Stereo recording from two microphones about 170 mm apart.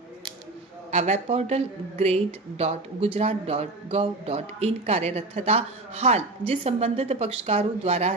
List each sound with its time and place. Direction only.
0.9 s speech: 45° right (ahead or behind)